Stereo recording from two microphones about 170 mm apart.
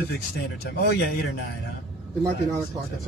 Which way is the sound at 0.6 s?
70° left (ahead or behind).